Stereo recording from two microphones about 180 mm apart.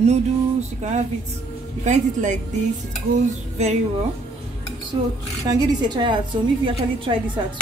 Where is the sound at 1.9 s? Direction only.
45° right (ahead or behind).